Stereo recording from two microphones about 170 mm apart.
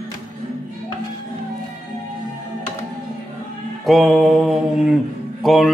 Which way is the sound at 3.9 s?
Centre (ahead or behind).